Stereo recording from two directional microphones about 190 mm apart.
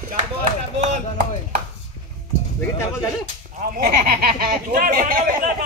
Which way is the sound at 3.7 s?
50° right (ahead or behind).